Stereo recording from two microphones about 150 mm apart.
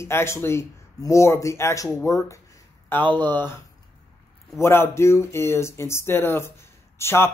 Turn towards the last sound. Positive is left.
turn(degrees=15)  # may be behind; listen again after turning